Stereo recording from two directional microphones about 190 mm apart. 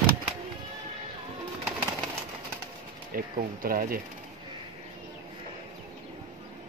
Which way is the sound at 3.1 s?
50° right (ahead or behind).